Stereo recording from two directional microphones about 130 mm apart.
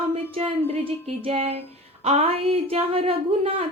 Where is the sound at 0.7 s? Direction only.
50° right (ahead or behind).